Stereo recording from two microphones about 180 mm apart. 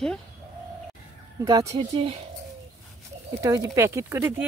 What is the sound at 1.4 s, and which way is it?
Speech, 20° right (ahead or behind).